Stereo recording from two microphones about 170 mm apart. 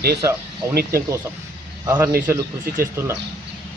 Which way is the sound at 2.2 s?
15° right (ahead or behind).